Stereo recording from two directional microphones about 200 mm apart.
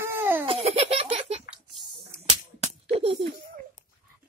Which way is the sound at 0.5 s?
30° right (ahead or behind).